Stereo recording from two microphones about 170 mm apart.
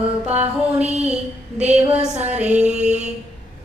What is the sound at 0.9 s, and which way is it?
Mantra, 40° right (ahead or behind).